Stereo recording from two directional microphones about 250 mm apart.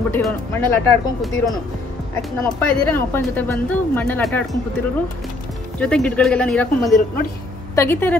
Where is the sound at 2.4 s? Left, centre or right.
Centre.